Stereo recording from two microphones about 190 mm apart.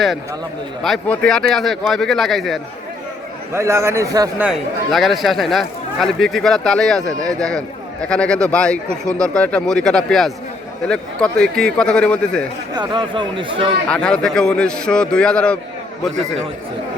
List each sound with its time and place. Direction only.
0.8 s speech: 5° left (ahead or behind)
3.5 s a man's voice: 15° right (ahead or behind)
4.4 s speech: centre (ahead or behind)
12.7 s speech: 25° right (ahead or behind)
13.8 s speech: 5° left (ahead or behind)